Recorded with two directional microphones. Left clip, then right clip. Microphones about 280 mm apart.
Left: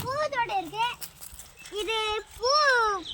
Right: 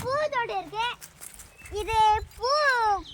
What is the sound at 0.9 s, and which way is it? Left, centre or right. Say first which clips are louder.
Clip-clop: left 2 dB; centre.